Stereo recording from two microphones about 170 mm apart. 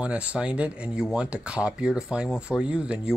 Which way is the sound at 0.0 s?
5° right (ahead or behind).